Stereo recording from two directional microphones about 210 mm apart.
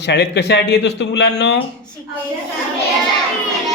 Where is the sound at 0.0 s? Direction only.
55° left (ahead or behind).